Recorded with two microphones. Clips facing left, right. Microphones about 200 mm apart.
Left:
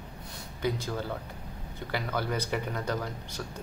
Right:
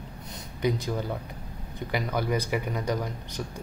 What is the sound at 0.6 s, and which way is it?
Speech, 15° right (ahead or behind).